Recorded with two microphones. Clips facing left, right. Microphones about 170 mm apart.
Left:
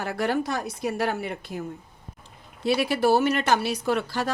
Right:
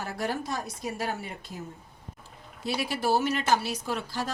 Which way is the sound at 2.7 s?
65° left (ahead or behind).